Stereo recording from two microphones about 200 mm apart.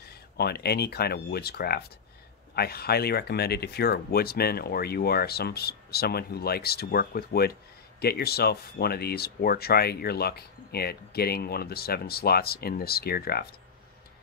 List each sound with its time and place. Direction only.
0.4 s speech: 55° left (ahead or behind)